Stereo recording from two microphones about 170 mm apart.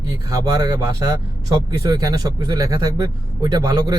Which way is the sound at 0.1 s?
20° right (ahead or behind).